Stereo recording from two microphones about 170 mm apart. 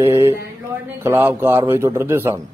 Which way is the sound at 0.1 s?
15° right (ahead or behind).